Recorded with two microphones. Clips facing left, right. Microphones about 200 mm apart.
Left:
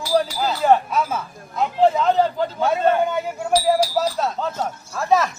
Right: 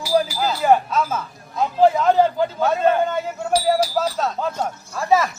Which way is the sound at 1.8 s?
5° right (ahead or behind).